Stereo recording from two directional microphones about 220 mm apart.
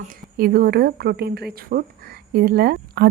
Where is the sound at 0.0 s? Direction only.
40° right (ahead or behind).